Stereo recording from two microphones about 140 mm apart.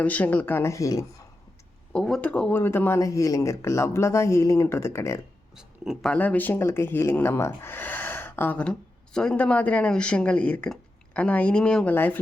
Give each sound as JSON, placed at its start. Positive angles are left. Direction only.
{"t": 0.0, "sound": "speech", "side_deg": 10}
{"t": 1.9, "sound": "speech", "side_deg": 5}
{"t": 5.5, "sound": "speech", "side_deg": -5}
{"t": 6.1, "sound": "speech", "side_deg": 10}